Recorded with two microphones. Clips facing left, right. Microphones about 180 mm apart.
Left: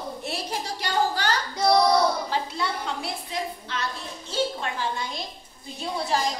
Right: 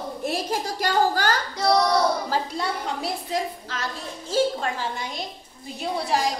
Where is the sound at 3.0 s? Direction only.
40° right (ahead or behind).